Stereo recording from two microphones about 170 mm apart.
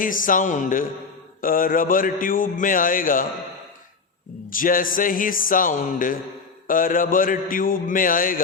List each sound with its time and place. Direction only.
0.0 s a man's voice: 55° left (ahead or behind)
4.4 s speech: 55° left (ahead or behind)